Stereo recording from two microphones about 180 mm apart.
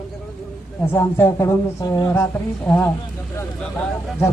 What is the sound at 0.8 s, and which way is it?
Speech, 10° left (ahead or behind).